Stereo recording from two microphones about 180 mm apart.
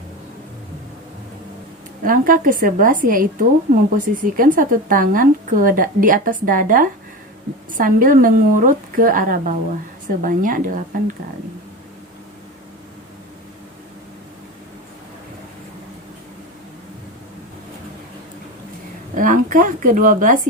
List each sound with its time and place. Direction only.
2.0 s a woman's voice: 50° right (ahead or behind)
19.1 s speech: 50° right (ahead or behind)